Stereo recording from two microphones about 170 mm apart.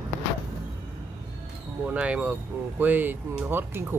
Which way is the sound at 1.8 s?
5° right (ahead or behind).